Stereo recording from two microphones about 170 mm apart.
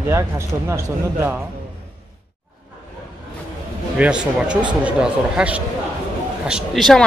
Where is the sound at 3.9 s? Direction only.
5° right (ahead or behind).